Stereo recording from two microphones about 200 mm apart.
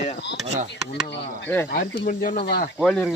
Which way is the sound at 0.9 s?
60° left (ahead or behind).